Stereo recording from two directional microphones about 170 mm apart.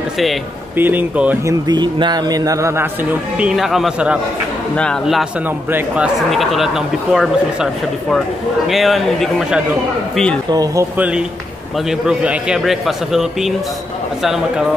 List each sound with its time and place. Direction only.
0.7 s speech: 10° right (ahead or behind)
5.7 s speech: 10° right (ahead or behind)
6.1 s speech: centre (ahead or behind)
10.5 s speech: 20° right (ahead or behind)
11.9 s speech: 5° right (ahead or behind)